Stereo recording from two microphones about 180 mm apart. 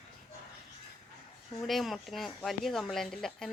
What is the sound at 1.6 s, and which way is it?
Speech, centre (ahead or behind).